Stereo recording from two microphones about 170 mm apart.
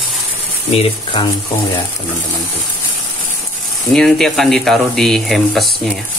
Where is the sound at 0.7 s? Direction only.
30° left (ahead or behind).